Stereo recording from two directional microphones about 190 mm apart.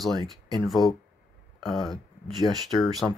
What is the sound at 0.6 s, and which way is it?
Speech, centre (ahead or behind).